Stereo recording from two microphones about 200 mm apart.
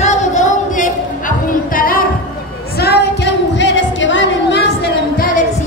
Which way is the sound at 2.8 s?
55° left (ahead or behind).